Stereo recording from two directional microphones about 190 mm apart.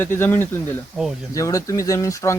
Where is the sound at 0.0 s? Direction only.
10° left (ahead or behind).